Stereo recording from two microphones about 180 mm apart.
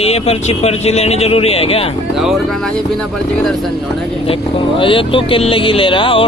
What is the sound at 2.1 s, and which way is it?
Speech, centre (ahead or behind).